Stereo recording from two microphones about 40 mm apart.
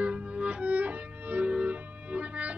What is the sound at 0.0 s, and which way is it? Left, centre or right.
Music, right.